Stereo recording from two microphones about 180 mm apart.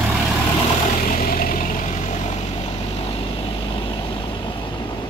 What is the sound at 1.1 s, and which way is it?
Vehicle, 50° left (ahead or behind).